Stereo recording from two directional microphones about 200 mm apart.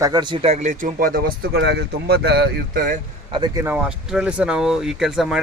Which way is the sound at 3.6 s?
10° right (ahead or behind).